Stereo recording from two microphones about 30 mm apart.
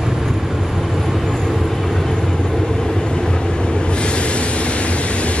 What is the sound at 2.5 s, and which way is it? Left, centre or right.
Train, centre.